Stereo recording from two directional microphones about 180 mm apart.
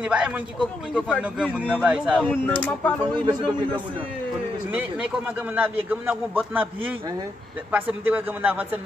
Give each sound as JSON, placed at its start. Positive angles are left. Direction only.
{"t": 0.0, "sound": "a man's voice", "side_deg": -5}
{"t": 2.4, "sound": "speech", "side_deg": 10}
{"t": 3.2, "sound": "a man's voice", "side_deg": -25}
{"t": 4.6, "sound": "a man's voice", "side_deg": -5}